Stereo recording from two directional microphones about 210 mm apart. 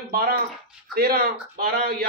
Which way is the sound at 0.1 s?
45° right (ahead or behind).